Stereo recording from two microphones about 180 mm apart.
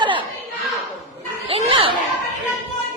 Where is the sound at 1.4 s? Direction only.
35° right (ahead or behind).